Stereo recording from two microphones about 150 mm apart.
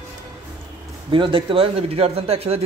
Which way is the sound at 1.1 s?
35° right (ahead or behind).